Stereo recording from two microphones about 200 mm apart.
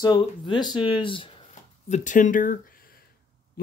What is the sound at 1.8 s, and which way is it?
Speech, 35° left (ahead or behind).